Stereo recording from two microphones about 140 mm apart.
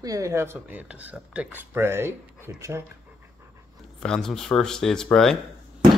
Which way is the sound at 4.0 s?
5° left (ahead or behind).